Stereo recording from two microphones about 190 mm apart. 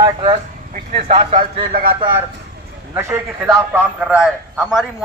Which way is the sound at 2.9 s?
15° right (ahead or behind).